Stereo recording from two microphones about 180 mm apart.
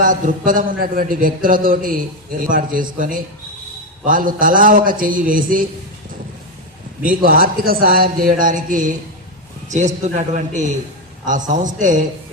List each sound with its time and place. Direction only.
0.0 s a man's voice: 50° right (ahead or behind)
4.0 s a man's voice: 50° right (ahead or behind)
7.0 s a man's voice: 50° right (ahead or behind)